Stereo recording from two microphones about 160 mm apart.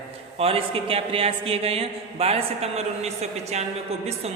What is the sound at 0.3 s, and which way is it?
A man's voice, 35° right (ahead or behind).